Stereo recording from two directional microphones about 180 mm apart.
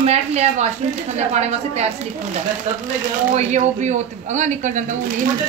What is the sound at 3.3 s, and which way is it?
Speech, 40° right (ahead or behind).